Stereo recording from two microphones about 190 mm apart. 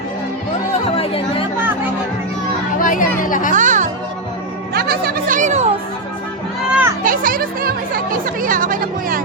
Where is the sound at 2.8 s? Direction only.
45° left (ahead or behind).